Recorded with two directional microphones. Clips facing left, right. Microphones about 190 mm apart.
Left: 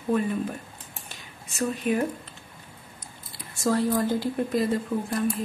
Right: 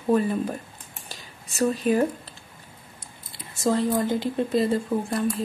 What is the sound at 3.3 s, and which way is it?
Speech, 20° right (ahead or behind).